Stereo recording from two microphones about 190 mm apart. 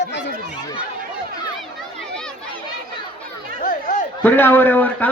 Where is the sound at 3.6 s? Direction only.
45° left (ahead or behind).